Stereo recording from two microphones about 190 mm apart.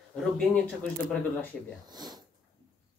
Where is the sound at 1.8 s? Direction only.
20° right (ahead or behind).